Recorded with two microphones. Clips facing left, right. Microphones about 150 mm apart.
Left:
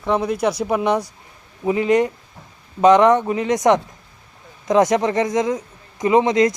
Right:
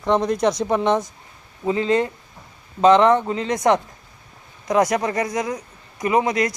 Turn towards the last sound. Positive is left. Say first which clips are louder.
# left 4 dB
turn(degrees=20)  # may be behind; listen again after turning